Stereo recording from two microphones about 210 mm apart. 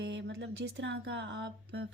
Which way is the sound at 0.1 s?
65° right (ahead or behind).